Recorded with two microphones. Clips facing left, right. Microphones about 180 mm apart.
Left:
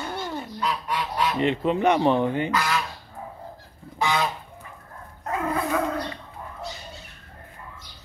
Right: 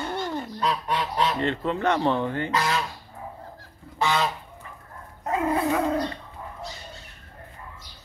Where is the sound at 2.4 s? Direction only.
25° right (ahead or behind).